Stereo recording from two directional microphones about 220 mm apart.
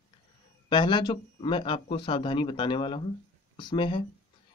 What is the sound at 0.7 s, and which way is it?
Speech, 20° left (ahead or behind).